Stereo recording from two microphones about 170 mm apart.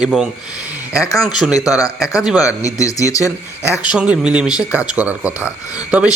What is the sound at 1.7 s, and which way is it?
Speech, 20° left (ahead or behind).